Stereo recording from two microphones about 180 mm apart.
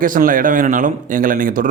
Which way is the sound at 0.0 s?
50° right (ahead or behind).